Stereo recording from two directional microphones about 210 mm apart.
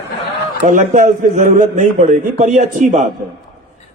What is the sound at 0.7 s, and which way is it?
A man's voice, 35° right (ahead or behind).